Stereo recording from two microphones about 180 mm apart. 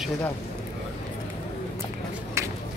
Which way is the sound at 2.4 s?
15° right (ahead or behind).